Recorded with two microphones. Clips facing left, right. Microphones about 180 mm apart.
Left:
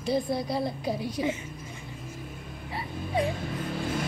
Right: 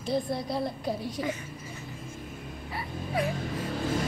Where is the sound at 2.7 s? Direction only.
30° left (ahead or behind).